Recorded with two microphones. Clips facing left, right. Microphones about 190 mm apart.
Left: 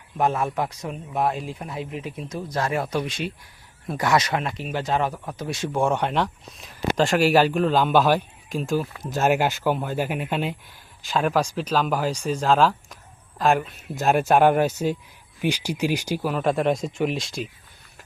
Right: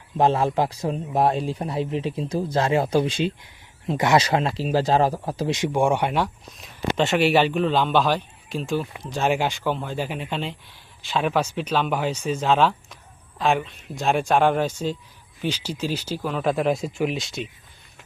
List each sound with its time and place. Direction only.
0.2 s a man's voice: 30° right (ahead or behind)
5.5 s speech: 15° right (ahead or behind); by 11.9 s 5° left (ahead or behind)
12.1 s speech: 5° right (ahead or behind)